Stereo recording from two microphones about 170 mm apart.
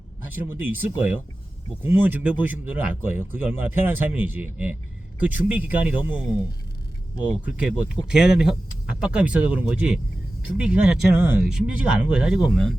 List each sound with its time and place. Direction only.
0.3 s speech: 10° right (ahead or behind)